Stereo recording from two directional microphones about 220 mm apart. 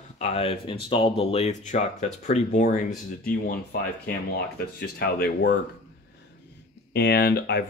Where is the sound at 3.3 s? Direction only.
45° left (ahead or behind).